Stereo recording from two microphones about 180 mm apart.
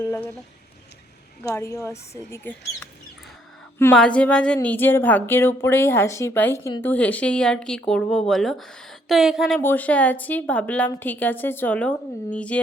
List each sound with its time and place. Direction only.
0.0 s speech: 15° left (ahead or behind)
1.5 s a woman's voice: 15° left (ahead or behind)
3.9 s a woman's voice: 5° left (ahead or behind)
9.6 s a woman's voice: 10° left (ahead or behind)